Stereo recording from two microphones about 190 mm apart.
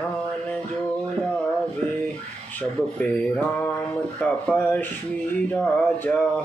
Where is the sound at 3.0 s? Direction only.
5° left (ahead or behind).